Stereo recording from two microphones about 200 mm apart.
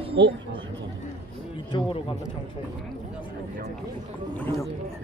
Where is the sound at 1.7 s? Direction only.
25° left (ahead or behind).